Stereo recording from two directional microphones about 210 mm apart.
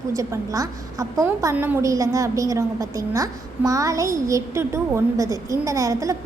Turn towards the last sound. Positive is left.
turn(degrees=-15)  # may be behind; listen again after turning